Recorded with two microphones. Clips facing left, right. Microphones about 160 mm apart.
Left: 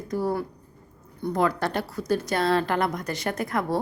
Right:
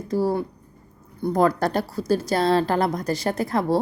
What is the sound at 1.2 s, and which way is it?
A woman's voice, 40° right (ahead or behind).